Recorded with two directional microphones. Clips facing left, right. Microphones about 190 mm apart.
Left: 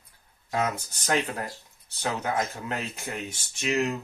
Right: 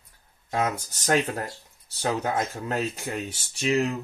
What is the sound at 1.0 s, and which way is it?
Speech, 40° right (ahead or behind).